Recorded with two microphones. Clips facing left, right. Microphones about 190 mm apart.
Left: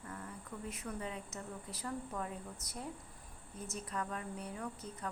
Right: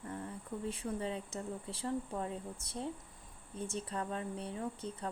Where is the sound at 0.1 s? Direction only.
30° right (ahead or behind).